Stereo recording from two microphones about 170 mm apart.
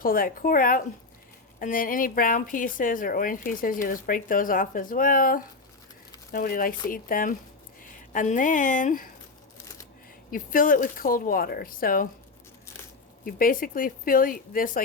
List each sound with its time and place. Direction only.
0.0 s a woman's voice: 55° left (ahead or behind)
10.3 s a woman's voice: 55° left (ahead or behind)
13.2 s a woman's voice: 55° left (ahead or behind)